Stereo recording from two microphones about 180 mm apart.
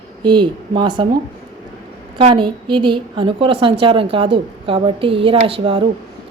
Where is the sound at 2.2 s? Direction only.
30° right (ahead or behind).